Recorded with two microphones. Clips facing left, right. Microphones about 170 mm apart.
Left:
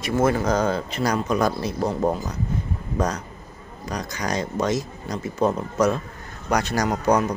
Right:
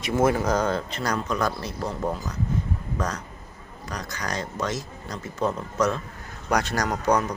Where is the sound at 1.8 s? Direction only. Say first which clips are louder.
Left 6 dB; 30° left (ahead or behind).